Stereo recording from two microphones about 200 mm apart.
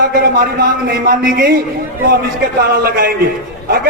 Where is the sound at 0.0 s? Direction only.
45° right (ahead or behind).